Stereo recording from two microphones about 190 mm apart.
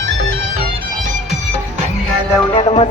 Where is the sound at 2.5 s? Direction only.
30° left (ahead or behind).